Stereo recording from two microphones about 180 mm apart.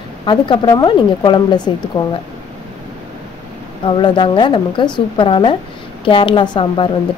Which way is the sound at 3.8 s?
25° left (ahead or behind).